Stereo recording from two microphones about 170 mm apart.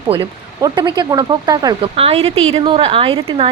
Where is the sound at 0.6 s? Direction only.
25° right (ahead or behind).